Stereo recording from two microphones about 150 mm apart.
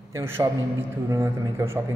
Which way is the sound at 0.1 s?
15° right (ahead or behind).